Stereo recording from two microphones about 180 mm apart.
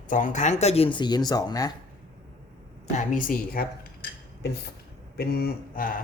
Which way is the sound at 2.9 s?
50° left (ahead or behind).